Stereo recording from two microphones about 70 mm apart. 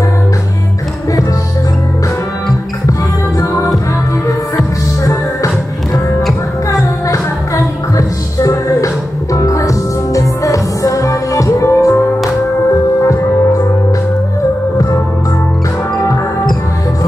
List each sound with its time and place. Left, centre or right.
3.3 s music: left
6.7 s music: left